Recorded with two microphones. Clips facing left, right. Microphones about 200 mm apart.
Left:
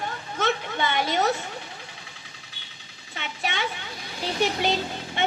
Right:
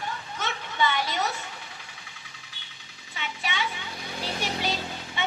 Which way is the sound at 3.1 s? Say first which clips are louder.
Left 2 dB; 50° left (ahead or behind).